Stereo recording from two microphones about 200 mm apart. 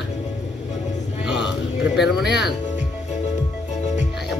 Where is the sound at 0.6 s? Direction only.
35° left (ahead or behind).